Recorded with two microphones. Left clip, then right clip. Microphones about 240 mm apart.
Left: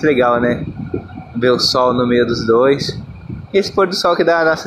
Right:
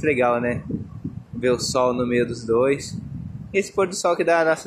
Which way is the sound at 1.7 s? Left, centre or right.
Centre.